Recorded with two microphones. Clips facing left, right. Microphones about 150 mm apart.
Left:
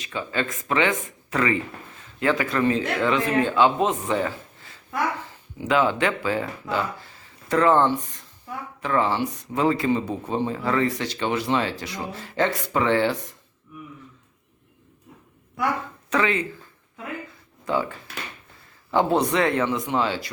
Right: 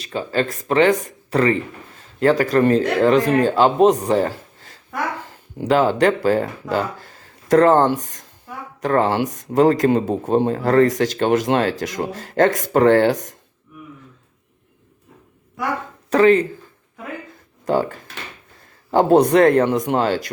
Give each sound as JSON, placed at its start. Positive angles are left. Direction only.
{"t": 0.0, "sound": "speech", "side_deg": -35}
{"t": 16.0, "sound": "speech", "side_deg": -35}
{"t": 17.7, "sound": "speech", "side_deg": -45}